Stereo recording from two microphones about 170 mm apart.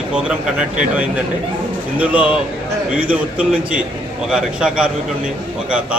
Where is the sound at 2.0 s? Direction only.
10° right (ahead or behind).